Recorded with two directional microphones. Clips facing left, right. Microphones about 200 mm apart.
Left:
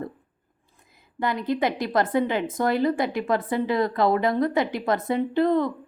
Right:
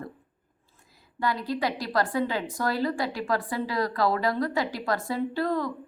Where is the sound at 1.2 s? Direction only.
20° left (ahead or behind).